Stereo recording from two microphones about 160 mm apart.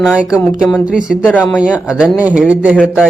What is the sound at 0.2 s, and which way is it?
A man's voice, 5° right (ahead or behind).